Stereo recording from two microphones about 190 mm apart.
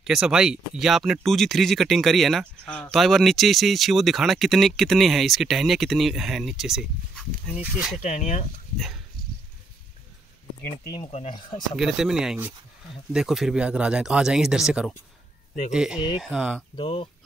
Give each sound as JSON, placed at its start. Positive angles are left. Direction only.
{"t": 0.0, "sound": "speech", "side_deg": -5}
{"t": 8.0, "sound": "speech", "side_deg": 40}
{"t": 10.9, "sound": "speech", "side_deg": 30}
{"t": 11.7, "sound": "speech", "side_deg": 0}
{"t": 16.7, "sound": "speech", "side_deg": 25}